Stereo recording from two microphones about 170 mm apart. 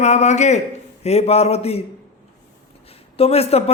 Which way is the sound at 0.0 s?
45° left (ahead or behind).